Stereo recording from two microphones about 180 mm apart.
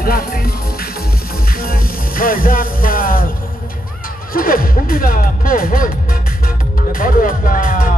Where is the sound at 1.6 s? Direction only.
50° left (ahead or behind).